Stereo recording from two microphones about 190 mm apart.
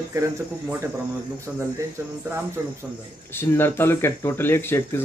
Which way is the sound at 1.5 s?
5° right (ahead or behind).